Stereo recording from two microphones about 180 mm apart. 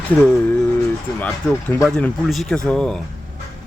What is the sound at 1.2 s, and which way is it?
Speech, 10° left (ahead or behind).